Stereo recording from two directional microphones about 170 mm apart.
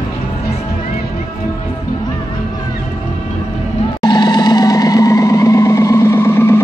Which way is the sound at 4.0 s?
25° left (ahead or behind).